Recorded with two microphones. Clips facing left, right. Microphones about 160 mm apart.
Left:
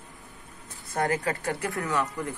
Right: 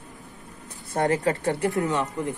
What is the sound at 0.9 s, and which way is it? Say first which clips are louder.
Speech: right 4 dB; 30° right (ahead or behind).